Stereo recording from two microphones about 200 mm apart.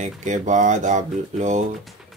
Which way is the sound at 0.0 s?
40° right (ahead or behind).